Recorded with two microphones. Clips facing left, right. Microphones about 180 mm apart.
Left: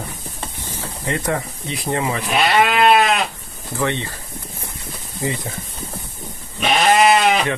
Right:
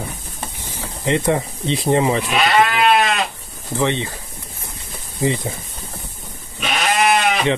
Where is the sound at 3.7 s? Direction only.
20° right (ahead or behind).